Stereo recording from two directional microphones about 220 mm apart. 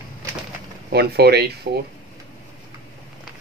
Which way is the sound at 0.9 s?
45° right (ahead or behind).